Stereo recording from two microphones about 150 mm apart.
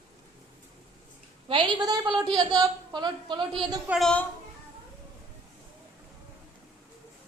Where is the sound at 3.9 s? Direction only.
Centre (ahead or behind).